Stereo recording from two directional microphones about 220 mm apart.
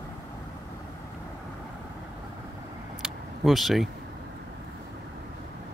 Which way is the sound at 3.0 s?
Centre (ahead or behind).